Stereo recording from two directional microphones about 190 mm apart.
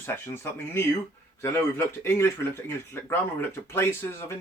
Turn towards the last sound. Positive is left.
turn(degrees=15)  # may be behind; listen again after turning